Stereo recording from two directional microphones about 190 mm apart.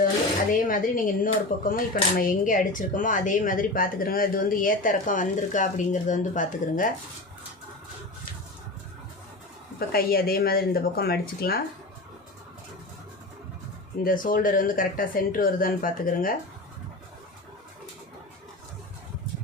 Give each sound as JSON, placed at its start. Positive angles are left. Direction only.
{"t": 0.7, "sound": "speech", "side_deg": 45}
{"t": 9.7, "sound": "speech", "side_deg": 50}
{"t": 14.0, "sound": "speech", "side_deg": 45}